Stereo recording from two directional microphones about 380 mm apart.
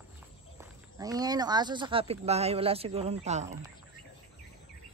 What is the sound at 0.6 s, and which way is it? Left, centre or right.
A man's voice, centre.